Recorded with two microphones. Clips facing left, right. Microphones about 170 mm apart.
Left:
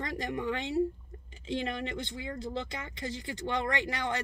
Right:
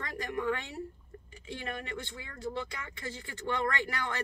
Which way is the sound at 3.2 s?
20° left (ahead or behind).